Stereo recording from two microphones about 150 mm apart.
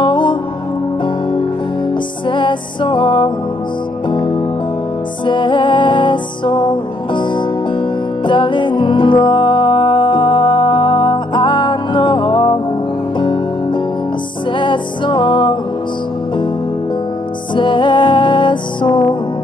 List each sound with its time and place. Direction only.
0.0 s music: 30° left (ahead or behind)
2.2 s music: 30° left (ahead or behind)
17.6 s music: 30° left (ahead or behind)